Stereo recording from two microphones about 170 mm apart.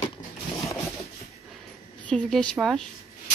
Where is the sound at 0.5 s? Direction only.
20° left (ahead or behind).